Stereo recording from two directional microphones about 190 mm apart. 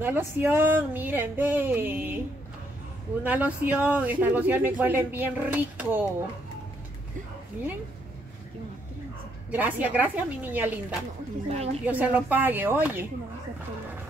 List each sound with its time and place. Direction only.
0.0 s speech: 10° right (ahead or behind)
3.3 s speech: 10° right (ahead or behind)
9.5 s speech: 10° right (ahead or behind)
11.5 s a woman's voice: 35° right (ahead or behind)
11.8 s speech: 10° right (ahead or behind)